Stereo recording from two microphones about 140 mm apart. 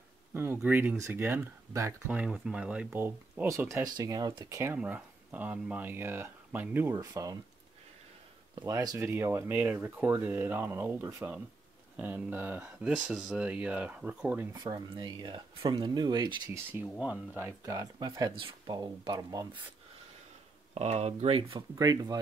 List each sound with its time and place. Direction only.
0.3 s speech: 15° right (ahead or behind)
4.7 s speech: 10° right (ahead or behind)
8.5 s speech: 25° right (ahead or behind)
14.5 s speech: 30° right (ahead or behind)
16.7 s speech: 15° right (ahead or behind); by 19.6 s 30° right (ahead or behind)
20.7 s speech: 50° right (ahead or behind)
21.7 s speech: 25° right (ahead or behind)